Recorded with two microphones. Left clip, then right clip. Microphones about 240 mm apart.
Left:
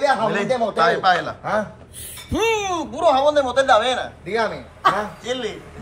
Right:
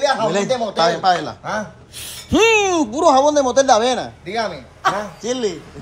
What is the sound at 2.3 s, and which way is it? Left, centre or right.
Speech, right.